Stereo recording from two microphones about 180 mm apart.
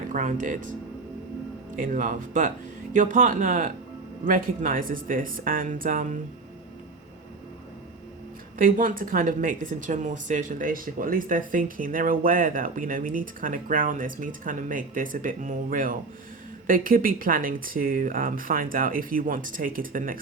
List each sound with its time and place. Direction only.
0.1 s speech: 45° right (ahead or behind)
1.7 s speech: 50° right (ahead or behind)
8.5 s speech: 50° right (ahead or behind)